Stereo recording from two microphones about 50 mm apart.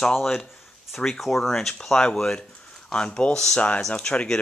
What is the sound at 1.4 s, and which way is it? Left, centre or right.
Speech, centre.